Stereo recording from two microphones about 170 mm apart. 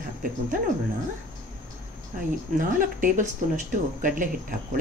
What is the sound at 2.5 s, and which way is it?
Speech, 50° right (ahead or behind).